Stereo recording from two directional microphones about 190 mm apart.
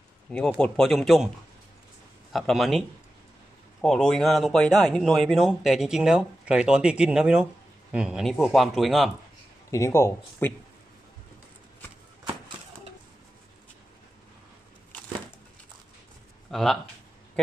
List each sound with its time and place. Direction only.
0.3 s speech: 5° left (ahead or behind)
2.3 s speech: centre (ahead or behind)
3.8 s speech: centre (ahead or behind)
9.7 s speech: 15° left (ahead or behind)
16.4 s a sound: centre (ahead or behind)